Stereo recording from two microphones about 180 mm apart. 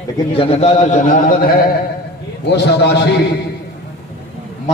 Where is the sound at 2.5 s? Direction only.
70° left (ahead or behind).